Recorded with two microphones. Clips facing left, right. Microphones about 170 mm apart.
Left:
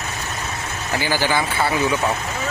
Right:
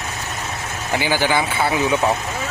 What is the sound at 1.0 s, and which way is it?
Speech, 15° right (ahead or behind).